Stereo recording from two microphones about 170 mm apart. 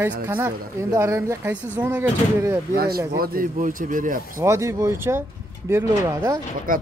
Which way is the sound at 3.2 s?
55° right (ahead or behind).